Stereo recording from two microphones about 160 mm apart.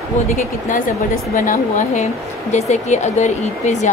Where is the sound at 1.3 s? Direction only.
55° left (ahead or behind).